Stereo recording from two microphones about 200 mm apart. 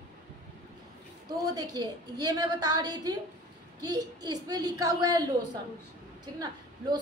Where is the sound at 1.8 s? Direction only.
20° right (ahead or behind).